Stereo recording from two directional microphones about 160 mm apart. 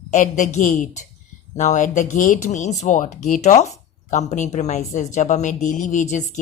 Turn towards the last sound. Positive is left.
turn(degrees=50)  # may be behind; listen again after turning